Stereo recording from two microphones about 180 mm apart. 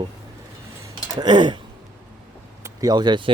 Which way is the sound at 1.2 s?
25° right (ahead or behind).